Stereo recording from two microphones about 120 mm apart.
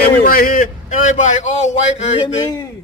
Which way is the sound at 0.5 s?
90° left.